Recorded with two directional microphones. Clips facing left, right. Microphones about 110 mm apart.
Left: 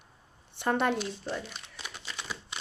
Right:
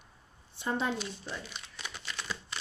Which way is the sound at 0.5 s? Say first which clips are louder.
Left 5 dB; 65° left (ahead or behind).